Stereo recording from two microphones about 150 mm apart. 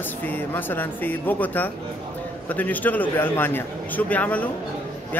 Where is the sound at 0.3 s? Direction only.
15° left (ahead or behind).